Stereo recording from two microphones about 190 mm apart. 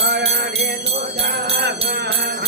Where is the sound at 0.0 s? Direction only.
60° right (ahead or behind).